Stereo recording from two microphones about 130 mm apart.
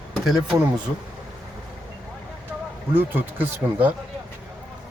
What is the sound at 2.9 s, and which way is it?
Speech, 15° right (ahead or behind).